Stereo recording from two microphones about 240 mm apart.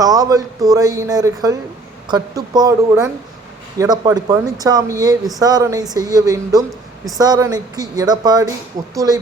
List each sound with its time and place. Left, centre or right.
0.0 s speech: centre